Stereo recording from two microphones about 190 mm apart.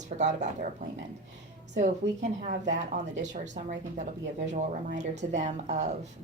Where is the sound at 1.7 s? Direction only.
35° right (ahead or behind).